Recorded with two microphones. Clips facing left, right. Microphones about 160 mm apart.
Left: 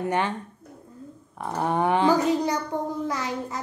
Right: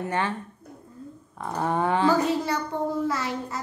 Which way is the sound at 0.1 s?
15° left (ahead or behind).